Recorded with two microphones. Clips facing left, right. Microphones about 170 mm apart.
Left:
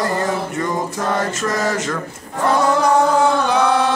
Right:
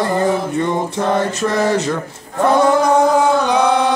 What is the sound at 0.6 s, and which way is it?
Mantra, 25° right (ahead or behind).